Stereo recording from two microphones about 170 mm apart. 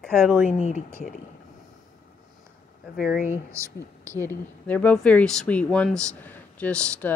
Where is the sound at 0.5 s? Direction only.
45° left (ahead or behind).